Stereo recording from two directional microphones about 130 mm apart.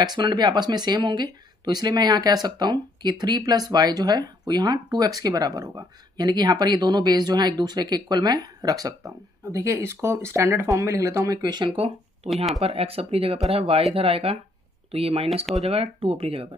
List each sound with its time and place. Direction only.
0.0 s speech: 35° right (ahead or behind)
11.7 s speech: 50° right (ahead or behind)